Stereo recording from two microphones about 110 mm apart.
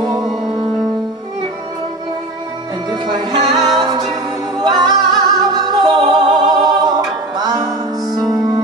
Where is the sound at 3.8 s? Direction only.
45° right (ahead or behind).